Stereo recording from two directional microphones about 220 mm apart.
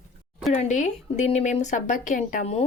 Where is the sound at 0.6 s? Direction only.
35° left (ahead or behind).